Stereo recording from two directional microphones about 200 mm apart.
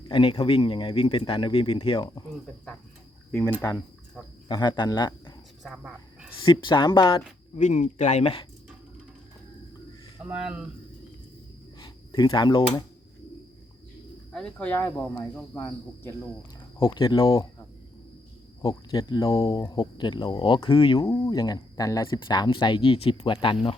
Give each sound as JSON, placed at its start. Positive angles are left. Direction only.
{"t": 0.1, "sound": "speech", "side_deg": 25}
{"t": 4.4, "sound": "speech", "side_deg": 25}
{"t": 5.6, "sound": "cricket", "side_deg": -5}
{"t": 6.4, "sound": "speech", "side_deg": 25}
{"t": 7.5, "sound": "speech", "side_deg": 35}
{"t": 10.2, "sound": "speech", "side_deg": -5}
{"t": 11.8, "sound": "speech", "side_deg": 25}
{"t": 14.3, "sound": "speech", "side_deg": 5}
{"t": 18.6, "sound": "speech", "side_deg": 15}